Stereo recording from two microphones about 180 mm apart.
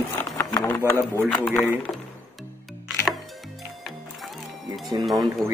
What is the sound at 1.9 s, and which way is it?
Music, 5° left (ahead or behind).